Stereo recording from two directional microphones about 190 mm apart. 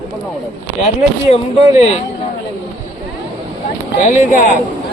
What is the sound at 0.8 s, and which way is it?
Speech, 35° left (ahead or behind).